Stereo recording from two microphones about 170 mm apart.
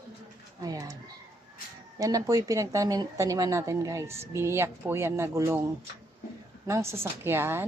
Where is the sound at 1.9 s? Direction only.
20° right (ahead or behind).